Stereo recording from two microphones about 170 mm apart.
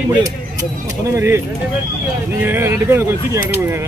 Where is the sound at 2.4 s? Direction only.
10° right (ahead or behind).